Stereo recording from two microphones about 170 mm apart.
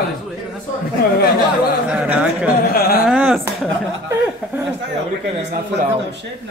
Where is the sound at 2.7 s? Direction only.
65° left (ahead or behind).